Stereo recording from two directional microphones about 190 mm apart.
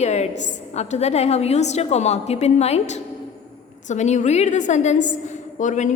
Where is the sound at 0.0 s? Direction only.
35° left (ahead or behind).